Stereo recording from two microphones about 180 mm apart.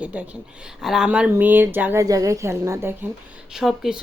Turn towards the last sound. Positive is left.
turn(degrees=-5)  # may be behind; listen again after turning